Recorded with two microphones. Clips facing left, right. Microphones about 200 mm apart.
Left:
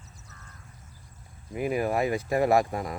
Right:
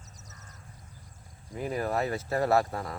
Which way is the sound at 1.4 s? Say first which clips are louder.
Left 4 dB; 10° left (ahead or behind).